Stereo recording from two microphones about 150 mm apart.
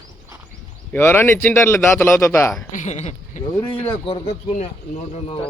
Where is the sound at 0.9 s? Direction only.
15° left (ahead or behind).